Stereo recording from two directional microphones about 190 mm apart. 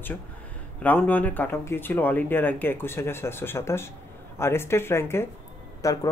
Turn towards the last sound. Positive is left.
turn(degrees=15)  # may be behind; listen again after turning